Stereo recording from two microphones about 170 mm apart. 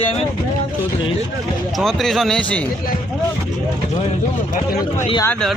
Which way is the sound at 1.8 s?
Centre (ahead or behind).